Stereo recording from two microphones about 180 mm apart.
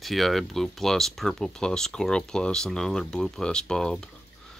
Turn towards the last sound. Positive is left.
turn(degrees=5)  # may be behind; listen again after turning